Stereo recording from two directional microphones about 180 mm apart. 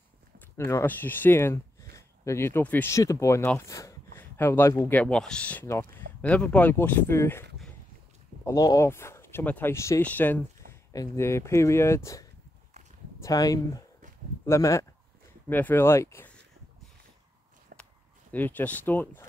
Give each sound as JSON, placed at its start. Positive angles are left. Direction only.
{"t": 0.7, "sound": "speech", "side_deg": 15}
{"t": 8.5, "sound": "speech", "side_deg": 20}
{"t": 18.3, "sound": "speech", "side_deg": 10}